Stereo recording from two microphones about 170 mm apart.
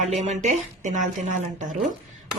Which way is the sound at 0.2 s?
45° right (ahead or behind).